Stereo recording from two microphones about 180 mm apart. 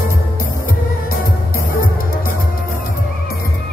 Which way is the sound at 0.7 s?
50° left (ahead or behind).